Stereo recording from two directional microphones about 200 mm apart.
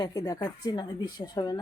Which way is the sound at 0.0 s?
20° left (ahead or behind).